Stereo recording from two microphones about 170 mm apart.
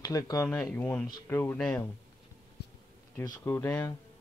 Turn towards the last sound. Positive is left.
turn(degrees=15)  # may be behind; listen again after turning